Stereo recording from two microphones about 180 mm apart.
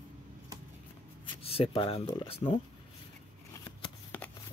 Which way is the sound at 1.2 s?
30° left (ahead or behind).